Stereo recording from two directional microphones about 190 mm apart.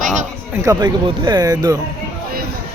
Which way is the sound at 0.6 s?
20° right (ahead or behind).